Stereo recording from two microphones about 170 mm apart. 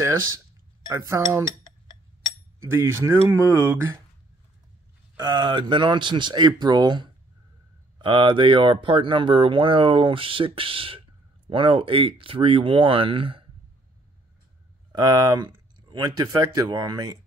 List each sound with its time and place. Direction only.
0.8 s speech: 20° right (ahead or behind)
2.6 s speech: 15° right (ahead or behind)
5.1 s speech: 25° right (ahead or behind)
14.9 s speech: 25° right (ahead or behind)